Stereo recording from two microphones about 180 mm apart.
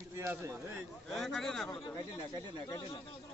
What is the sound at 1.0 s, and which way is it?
Speech, centre (ahead or behind).